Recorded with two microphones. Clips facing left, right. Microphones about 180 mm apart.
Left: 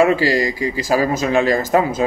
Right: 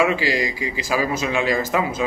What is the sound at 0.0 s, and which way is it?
A man's voice, 45° left (ahead or behind).